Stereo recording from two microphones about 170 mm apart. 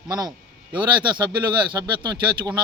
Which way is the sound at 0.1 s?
25° right (ahead or behind).